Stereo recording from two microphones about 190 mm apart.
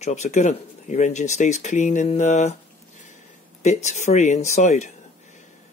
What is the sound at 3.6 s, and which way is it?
Speech, 35° left (ahead or behind).